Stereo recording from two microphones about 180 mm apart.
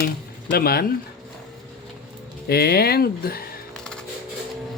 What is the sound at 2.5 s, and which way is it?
Speech, 60° left (ahead or behind).